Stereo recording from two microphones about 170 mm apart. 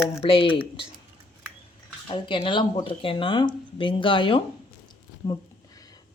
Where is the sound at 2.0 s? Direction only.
30° left (ahead or behind).